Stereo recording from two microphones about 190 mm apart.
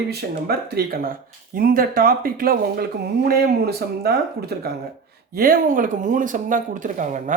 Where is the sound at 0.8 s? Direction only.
55° right (ahead or behind).